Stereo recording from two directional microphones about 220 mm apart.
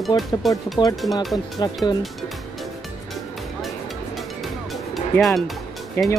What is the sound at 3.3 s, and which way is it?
Music, centre (ahead or behind).